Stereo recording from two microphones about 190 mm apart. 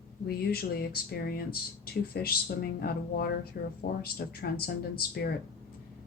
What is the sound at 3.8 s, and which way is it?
Speech, 55° left (ahead or behind).